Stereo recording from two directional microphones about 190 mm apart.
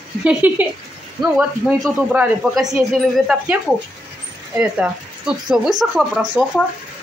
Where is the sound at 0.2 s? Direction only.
5° right (ahead or behind).